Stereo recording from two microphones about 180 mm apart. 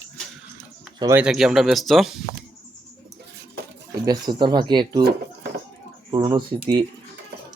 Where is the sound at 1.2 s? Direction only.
Centre (ahead or behind).